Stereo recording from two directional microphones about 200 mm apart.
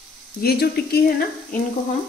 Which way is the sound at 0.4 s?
50° left (ahead or behind).